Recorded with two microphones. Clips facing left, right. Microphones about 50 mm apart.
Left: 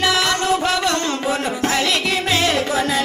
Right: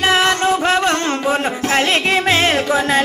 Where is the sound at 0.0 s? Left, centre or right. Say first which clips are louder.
Right 4 dB; right.